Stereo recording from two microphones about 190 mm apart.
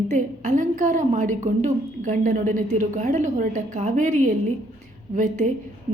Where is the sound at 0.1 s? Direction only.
40° right (ahead or behind).